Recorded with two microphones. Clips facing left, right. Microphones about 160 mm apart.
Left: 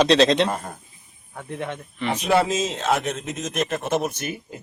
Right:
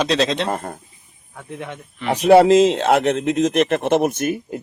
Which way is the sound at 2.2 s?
65° right (ahead or behind).